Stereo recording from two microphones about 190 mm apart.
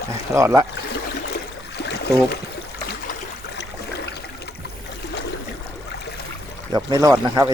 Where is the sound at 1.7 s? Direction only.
60° left (ahead or behind).